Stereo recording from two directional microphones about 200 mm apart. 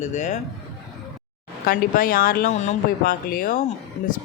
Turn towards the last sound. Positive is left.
turn(degrees=40)  # may be behind; listen again after turning